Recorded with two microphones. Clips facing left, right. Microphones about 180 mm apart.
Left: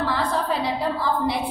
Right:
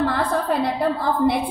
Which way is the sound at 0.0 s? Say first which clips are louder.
Right 3 dB; 55° right (ahead or behind).